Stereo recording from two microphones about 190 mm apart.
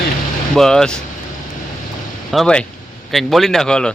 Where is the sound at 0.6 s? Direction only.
Centre (ahead or behind).